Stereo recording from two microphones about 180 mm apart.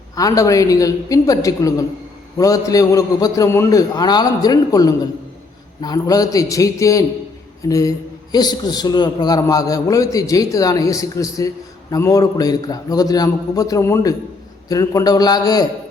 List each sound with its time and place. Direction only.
0.2 s a man's voice: 20° left (ahead or behind)